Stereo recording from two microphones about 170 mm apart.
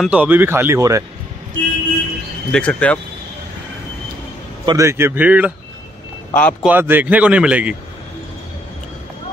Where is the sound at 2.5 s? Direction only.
5° left (ahead or behind).